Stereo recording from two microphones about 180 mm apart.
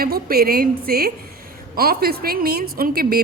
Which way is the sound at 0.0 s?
60° right (ahead or behind).